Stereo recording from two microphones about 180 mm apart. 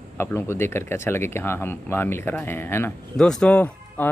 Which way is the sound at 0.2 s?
15° left (ahead or behind).